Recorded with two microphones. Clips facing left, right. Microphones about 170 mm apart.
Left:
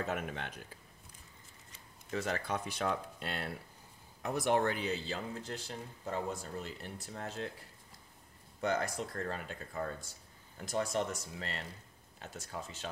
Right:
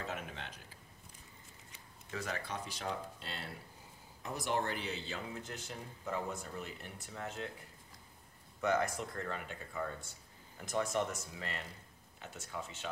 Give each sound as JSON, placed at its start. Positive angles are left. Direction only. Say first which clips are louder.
{"t": 0.0, "sound": "a sound", "louder": "left 5 dB", "side_deg": 55}
{"t": 2.1, "sound": "speech", "louder": "left 5 dB", "side_deg": 30}
{"t": 2.4, "sound": "speech", "louder": "left 6 dB", "side_deg": 55}
{"t": 4.9, "sound": "speech", "louder": "left 4 dB", "side_deg": 35}
{"t": 8.5, "sound": "speech", "louder": "right 1 dB", "side_deg": 35}